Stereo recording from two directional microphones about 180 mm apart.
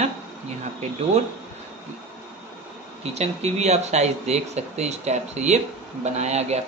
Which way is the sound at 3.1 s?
35° right (ahead or behind).